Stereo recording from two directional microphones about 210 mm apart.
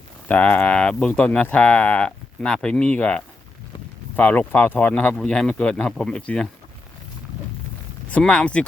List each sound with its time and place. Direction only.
0.3 s speech: 5° left (ahead or behind)
8.1 s speech: 5° left (ahead or behind)